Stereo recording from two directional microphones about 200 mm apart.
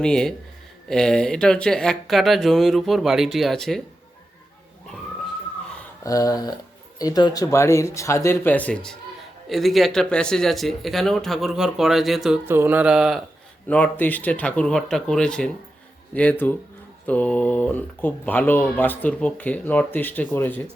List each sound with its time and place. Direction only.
0.0 s speech: 5° left (ahead or behind)
6.0 s speech: 15° left (ahead or behind)